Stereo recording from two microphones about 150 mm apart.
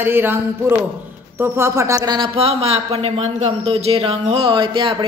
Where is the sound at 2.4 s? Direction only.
40° right (ahead or behind).